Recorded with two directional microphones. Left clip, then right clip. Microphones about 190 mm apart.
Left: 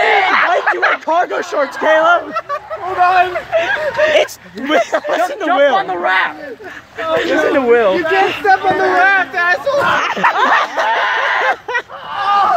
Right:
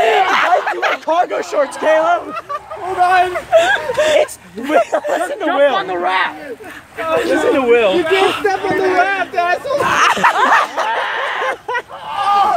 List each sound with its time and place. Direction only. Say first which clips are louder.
0.0 s a sound: left 1 dB; 10° right (ahead or behind)
1.0 s speech: left 1 dB; 25° left (ahead or behind)
3.0 s speech: left 1 dB; 10° right (ahead or behind)
4.2 s speech: even; 40° left (ahead or behind)
7.0 s a man's voice: left 1 dB; 5° right (ahead or behind)
7.3 s speech: left 1 dB; 10° left (ahead or behind)
8.1 s speech: even; 20° right (ahead or behind)
9.0 s speech: left 4 dB; 50° left (ahead or behind)
9.9 s speech: right 2 dB; 15° right (ahead or behind)
10.3 s speech: even; 25° left (ahead or behind)
10.9 s a sound: left 4 dB; 55° left (ahead or behind)
12.1 s a sound: even; 15° right (ahead or behind)